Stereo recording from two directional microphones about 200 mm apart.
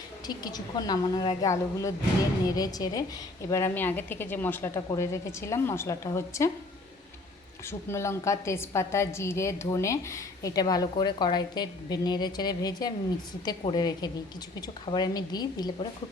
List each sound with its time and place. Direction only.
0.3 s a woman's voice: 20° left (ahead or behind)
7.7 s a woman's voice: 15° left (ahead or behind)